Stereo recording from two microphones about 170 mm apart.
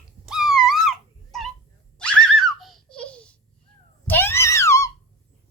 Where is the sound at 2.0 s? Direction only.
5° left (ahead or behind).